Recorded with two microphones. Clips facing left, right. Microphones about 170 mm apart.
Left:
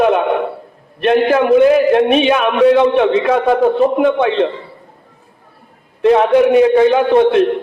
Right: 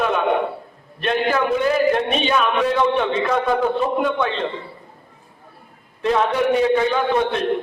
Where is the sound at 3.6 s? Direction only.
40° left (ahead or behind).